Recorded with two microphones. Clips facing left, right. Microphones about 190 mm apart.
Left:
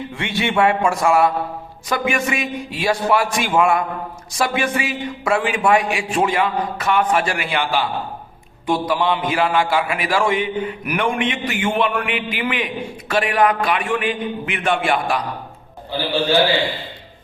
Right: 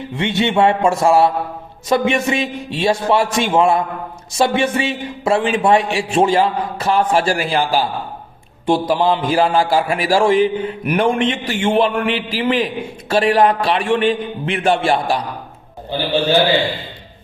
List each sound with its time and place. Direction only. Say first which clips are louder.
0.2 s a man's voice: right 3 dB; 20° right (ahead or behind)